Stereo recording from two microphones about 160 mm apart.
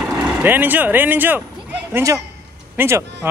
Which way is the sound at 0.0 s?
10° right (ahead or behind).